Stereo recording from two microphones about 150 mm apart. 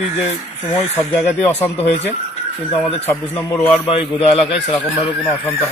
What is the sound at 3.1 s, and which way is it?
Speech, 15° left (ahead or behind).